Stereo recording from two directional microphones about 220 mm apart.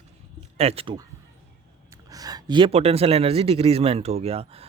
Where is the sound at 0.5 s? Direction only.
25° right (ahead or behind).